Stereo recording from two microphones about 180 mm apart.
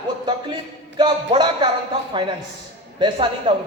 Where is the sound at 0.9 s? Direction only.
25° right (ahead or behind).